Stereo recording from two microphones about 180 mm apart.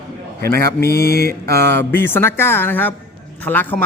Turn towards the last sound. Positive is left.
turn(degrees=10)  # may be behind; listen again after turning